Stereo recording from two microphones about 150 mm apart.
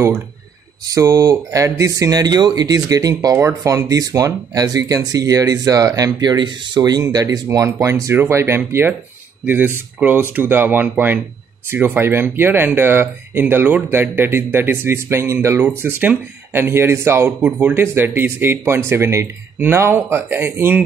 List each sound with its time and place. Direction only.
0.8 s speech: 20° right (ahead or behind)